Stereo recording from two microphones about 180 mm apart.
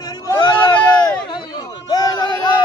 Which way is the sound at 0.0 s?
20° left (ahead or behind).